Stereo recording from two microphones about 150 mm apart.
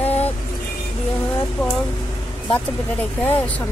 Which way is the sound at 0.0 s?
45° left (ahead or behind).